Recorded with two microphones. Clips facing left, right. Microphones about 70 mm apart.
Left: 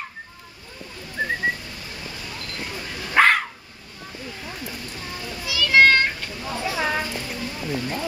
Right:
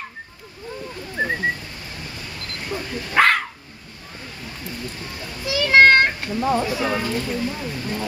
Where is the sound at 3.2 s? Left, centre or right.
Centre.